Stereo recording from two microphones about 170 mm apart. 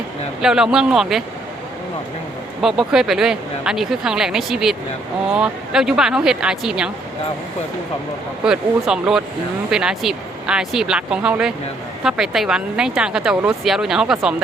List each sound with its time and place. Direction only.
0.4 s speech: 5° right (ahead or behind)
2.6 s speech: centre (ahead or behind)
8.4 s speech: 5° right (ahead or behind)